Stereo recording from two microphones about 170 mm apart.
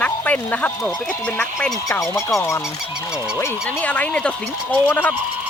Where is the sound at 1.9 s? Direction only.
20° left (ahead or behind).